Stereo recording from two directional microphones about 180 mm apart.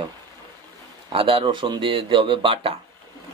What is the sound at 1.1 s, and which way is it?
Speech, 30° right (ahead or behind).